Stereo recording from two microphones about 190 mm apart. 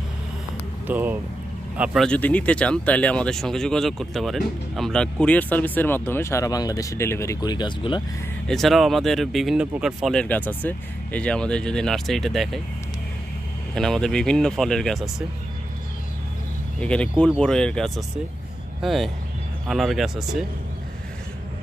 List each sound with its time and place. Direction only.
0.8 s speech: 10° right (ahead or behind)
1.8 s speech: 5° left (ahead or behind); by 8.0 s 25° left (ahead or behind)
8.5 s speech: centre (ahead or behind)
10.2 s speech: 10° left (ahead or behind)
13.7 s speech: 5° left (ahead or behind)
16.8 s speech: 5° left (ahead or behind)